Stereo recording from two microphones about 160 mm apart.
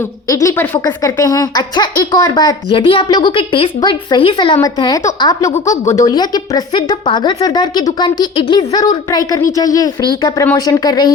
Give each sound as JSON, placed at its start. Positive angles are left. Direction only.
{"t": 0.0, "sound": "a woman's voice", "side_deg": 20}
{"t": 4.6, "sound": "a woman's voice", "side_deg": 25}